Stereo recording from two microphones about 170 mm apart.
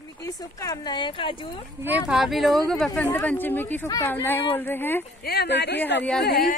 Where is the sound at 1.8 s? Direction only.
10° right (ahead or behind); by 5.0 s 10° left (ahead or behind).